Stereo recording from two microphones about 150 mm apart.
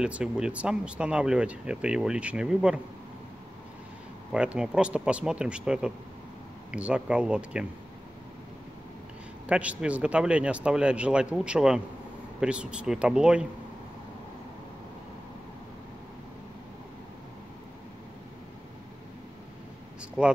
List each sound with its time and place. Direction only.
0.0 s speech: 5° right (ahead or behind)
4.3 s speech: 5° right (ahead or behind)
9.5 s speech: 10° right (ahead or behind)
20.2 s speech: 5° right (ahead or behind)